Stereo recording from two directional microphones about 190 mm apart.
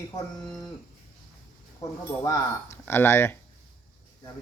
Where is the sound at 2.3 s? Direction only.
15° left (ahead or behind).